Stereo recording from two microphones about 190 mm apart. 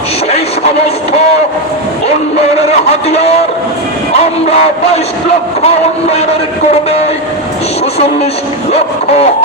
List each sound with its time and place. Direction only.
3.1 s speech: 35° left (ahead or behind)
5.6 s speech: 35° left (ahead or behind)
7.9 s speech: 35° left (ahead or behind)